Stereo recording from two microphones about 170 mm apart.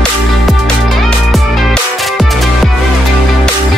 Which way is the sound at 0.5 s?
Centre (ahead or behind).